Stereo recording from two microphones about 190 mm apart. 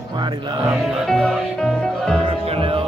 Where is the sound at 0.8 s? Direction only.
Centre (ahead or behind).